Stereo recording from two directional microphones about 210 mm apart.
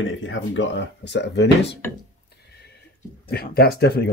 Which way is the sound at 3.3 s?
45° left (ahead or behind).